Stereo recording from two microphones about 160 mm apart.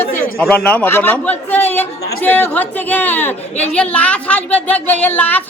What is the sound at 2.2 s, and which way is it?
A woman's voice, 10° left (ahead or behind).